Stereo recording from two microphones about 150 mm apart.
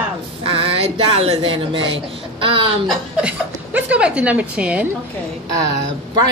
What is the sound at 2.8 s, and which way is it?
A woman's voice, 5° right (ahead or behind).